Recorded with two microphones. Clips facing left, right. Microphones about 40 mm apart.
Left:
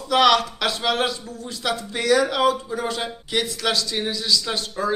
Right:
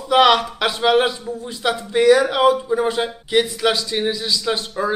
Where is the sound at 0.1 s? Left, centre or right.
Centre.